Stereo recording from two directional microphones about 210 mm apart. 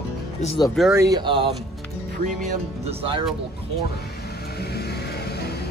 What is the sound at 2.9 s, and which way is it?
Speech, 25° right (ahead or behind).